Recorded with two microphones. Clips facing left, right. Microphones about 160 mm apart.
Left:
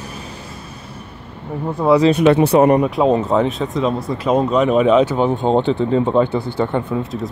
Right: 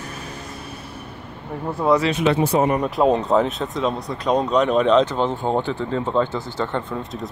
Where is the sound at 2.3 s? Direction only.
70° left (ahead or behind).